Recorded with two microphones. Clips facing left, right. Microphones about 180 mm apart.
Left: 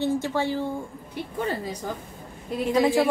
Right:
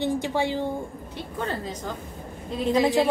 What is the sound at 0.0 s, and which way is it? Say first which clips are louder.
Speech: even; 15° right (ahead or behind).